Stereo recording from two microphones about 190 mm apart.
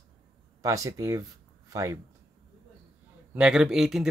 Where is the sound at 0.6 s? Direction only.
15° right (ahead or behind).